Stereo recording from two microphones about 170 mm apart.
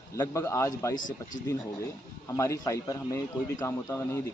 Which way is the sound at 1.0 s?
50° left (ahead or behind).